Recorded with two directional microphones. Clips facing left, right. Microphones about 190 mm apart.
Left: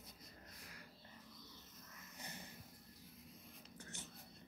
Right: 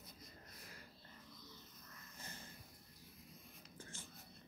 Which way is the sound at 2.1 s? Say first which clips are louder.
Left 2 dB; 15° left (ahead or behind).